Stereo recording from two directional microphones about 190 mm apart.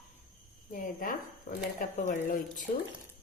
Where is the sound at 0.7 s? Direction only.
45° left (ahead or behind).